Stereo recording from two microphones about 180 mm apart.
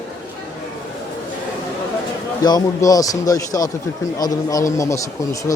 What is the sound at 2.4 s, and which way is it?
Speech, 20° left (ahead or behind).